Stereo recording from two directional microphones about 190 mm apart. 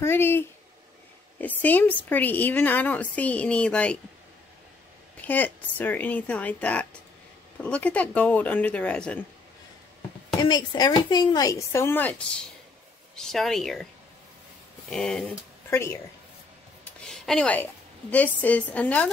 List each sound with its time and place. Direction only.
0.0 s a woman's voice: 10° left (ahead or behind)
5.2 s a woman's voice: 10° left (ahead or behind)
10.4 s a woman's voice: 20° left (ahead or behind); by 13.8 s centre (ahead or behind)
14.9 s speech: centre (ahead or behind)
15.7 s a woman's voice: 15° left (ahead or behind)
17.0 s a sound: 5° left (ahead or behind)
18.1 s a woman's voice: 10° left (ahead or behind)